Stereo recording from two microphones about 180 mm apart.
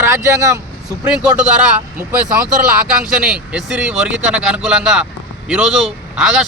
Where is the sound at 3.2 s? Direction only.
5° right (ahead or behind).